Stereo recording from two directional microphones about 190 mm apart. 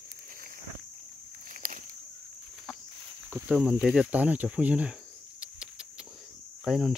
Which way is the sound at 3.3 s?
10° right (ahead or behind).